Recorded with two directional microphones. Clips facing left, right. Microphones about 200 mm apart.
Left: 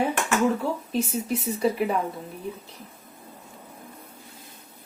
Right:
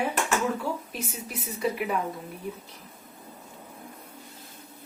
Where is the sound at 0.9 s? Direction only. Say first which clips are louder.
Left 10 dB; 30° left (ahead or behind).